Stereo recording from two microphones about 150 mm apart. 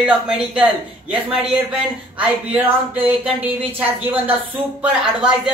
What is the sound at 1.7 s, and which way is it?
Speech, 10° right (ahead or behind).